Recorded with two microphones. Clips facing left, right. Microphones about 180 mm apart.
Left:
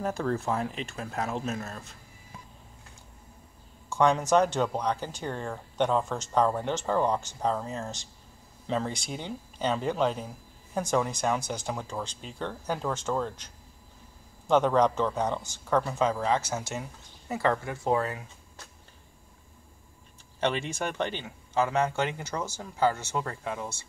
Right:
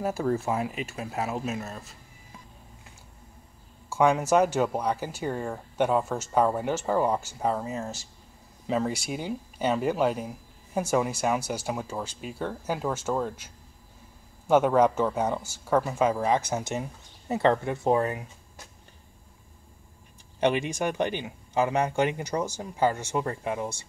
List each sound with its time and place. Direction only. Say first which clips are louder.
0.0 s speech: right 2 dB; 10° right (ahead or behind)
3.9 s speech: right 1 dB; 5° right (ahead or behind)
14.5 s speech: right 2 dB; 10° right (ahead or behind)
20.3 s speech: right 4 dB; 15° right (ahead or behind)